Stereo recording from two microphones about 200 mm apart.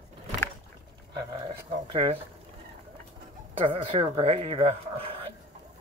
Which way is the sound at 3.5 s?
25° right (ahead or behind).